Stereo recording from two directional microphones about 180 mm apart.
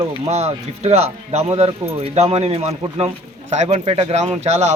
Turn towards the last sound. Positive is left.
turn(degrees=-40)  # may be behind; listen again after turning